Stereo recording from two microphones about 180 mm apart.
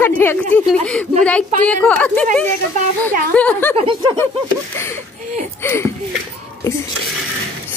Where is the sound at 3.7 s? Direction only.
30° right (ahead or behind).